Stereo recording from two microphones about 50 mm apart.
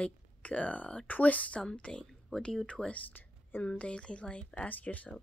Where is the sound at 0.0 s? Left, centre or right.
Left.